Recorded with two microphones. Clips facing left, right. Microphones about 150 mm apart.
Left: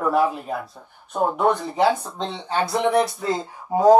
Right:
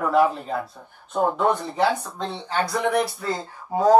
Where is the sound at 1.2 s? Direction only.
15° left (ahead or behind).